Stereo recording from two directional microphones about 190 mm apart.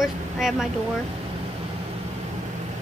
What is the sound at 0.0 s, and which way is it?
Vehicle, centre (ahead or behind).